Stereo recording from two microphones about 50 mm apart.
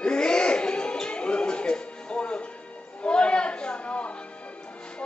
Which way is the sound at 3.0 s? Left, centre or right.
Centre.